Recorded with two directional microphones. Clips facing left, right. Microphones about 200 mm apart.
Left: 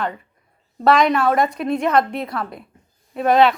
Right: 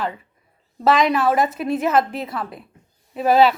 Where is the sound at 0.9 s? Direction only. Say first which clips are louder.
Left 1 dB; centre (ahead or behind).